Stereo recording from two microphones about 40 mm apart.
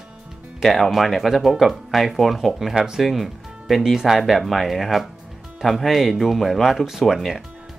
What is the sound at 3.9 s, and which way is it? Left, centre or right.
Speech, centre.